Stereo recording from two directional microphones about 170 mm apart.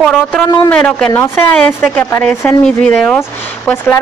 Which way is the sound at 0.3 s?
5° left (ahead or behind).